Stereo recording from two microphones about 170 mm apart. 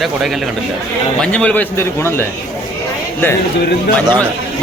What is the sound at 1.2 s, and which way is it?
A man's voice, 5° left (ahead or behind).